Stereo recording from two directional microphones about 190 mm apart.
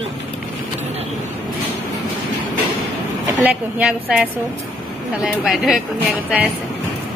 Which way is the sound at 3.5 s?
5° right (ahead or behind).